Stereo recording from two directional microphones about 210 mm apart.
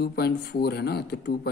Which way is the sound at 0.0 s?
50° left (ahead or behind).